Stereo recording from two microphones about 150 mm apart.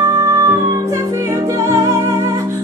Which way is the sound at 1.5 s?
20° right (ahead or behind).